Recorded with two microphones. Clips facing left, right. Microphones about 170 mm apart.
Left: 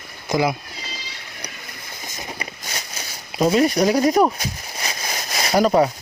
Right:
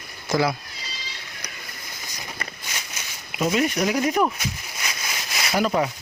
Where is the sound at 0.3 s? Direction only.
20° left (ahead or behind).